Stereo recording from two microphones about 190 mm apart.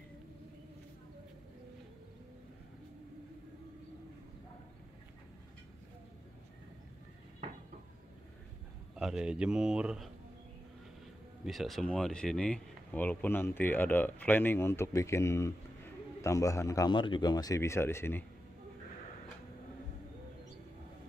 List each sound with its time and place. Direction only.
8.9 s speech: 5° right (ahead or behind)
11.4 s speech: centre (ahead or behind)